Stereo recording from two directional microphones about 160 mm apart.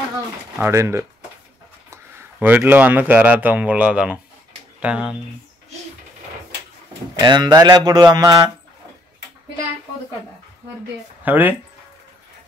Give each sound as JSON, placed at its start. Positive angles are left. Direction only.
{"t": 0.6, "sound": "speech", "side_deg": -15}
{"t": 7.2, "sound": "speech", "side_deg": -25}
{"t": 11.2, "sound": "speech", "side_deg": -10}